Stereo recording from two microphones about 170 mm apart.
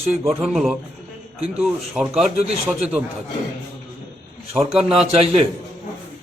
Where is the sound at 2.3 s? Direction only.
40° right (ahead or behind).